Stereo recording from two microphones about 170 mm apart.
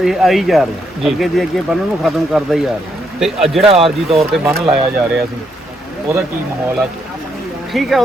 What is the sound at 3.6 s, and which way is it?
Speech, 35° right (ahead or behind).